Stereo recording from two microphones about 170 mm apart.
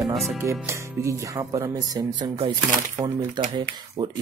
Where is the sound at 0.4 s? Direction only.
15° right (ahead or behind).